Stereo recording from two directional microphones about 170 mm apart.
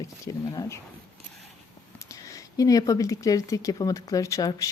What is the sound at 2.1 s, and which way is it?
Speech, 20° left (ahead or behind).